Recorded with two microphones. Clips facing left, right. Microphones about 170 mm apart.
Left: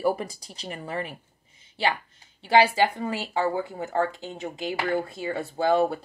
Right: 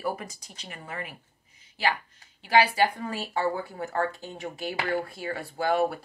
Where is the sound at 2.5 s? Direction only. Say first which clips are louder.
Left 2 dB; 25° left (ahead or behind).